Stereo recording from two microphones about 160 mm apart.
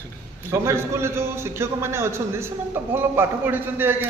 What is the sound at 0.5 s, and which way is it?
A man's voice, 15° right (ahead or behind).